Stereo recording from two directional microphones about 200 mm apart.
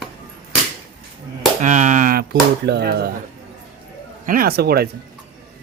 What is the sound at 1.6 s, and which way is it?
Speech, 40° right (ahead or behind).